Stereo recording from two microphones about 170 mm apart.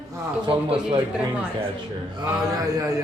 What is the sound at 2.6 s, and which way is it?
Speech, 20° right (ahead or behind).